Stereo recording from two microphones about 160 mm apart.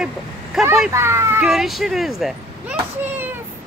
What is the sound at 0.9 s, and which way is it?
Speech, 15° right (ahead or behind).